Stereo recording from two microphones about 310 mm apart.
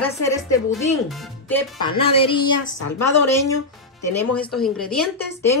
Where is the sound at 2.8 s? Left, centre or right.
Left.